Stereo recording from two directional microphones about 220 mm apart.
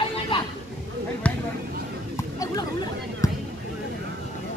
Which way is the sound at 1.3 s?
5° left (ahead or behind).